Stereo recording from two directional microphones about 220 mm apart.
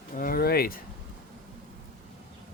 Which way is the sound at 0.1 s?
40° left (ahead or behind).